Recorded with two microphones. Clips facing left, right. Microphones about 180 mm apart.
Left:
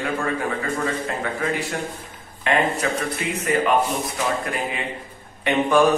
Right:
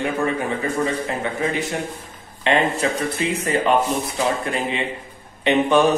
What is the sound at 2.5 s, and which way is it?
Speech, 25° right (ahead or behind).